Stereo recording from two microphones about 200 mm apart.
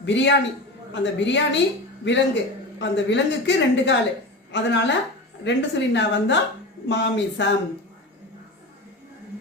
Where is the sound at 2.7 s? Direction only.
65° left (ahead or behind).